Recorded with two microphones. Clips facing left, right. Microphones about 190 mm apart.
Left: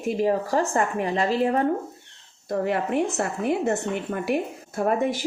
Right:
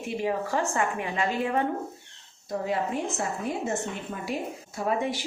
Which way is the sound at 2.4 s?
65° left (ahead or behind).